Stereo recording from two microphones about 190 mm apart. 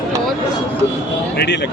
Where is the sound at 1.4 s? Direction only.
65° left (ahead or behind).